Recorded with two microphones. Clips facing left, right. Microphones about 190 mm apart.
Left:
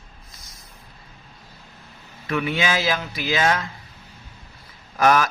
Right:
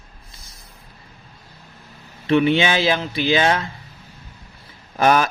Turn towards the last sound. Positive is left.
turn(degrees=-30)  # may be behind; listen again after turning